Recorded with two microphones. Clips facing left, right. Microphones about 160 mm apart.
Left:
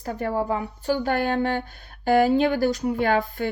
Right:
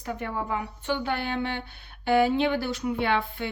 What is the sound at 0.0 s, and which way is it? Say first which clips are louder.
A woman's voice: left 6 dB; 40° left (ahead or behind).